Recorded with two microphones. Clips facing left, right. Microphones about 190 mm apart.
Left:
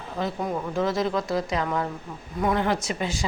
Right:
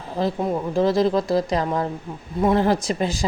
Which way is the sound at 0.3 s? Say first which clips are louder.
Right 4 dB; 25° right (ahead or behind).